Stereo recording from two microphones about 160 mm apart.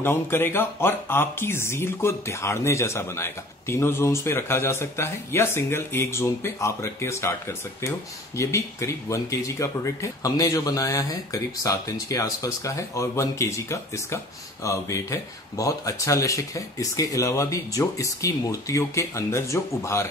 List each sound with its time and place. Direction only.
0.0 s speech: 15° left (ahead or behind)
8.4 s speech: 20° left (ahead or behind)